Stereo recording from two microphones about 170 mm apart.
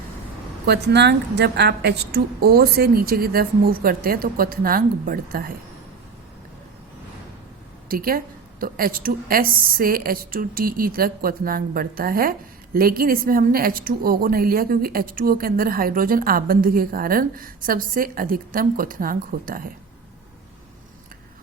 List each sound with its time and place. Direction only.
0.6 s a woman's voice: 75° right (ahead or behind); by 5.5 s 60° right (ahead or behind)
7.9 s a woman's voice: 60° right (ahead or behind)